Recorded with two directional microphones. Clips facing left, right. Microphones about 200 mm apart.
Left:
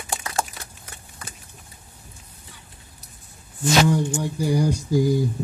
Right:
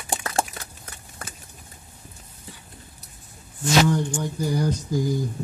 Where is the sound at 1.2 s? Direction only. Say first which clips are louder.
Right 2 dB; 50° right (ahead or behind).